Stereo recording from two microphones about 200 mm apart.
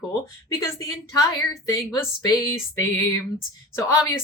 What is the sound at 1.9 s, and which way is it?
Speech, 15° left (ahead or behind).